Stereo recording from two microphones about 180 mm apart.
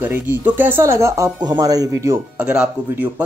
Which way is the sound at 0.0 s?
10° right (ahead or behind).